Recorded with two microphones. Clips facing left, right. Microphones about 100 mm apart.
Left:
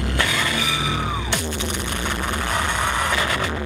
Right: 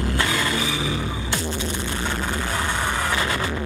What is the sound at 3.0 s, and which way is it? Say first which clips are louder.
Vehicle: left 1 dB; 65° left (ahead or behind).